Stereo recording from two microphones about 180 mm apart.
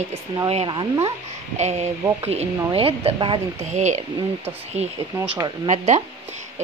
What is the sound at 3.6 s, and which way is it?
Speech, 40° right (ahead or behind).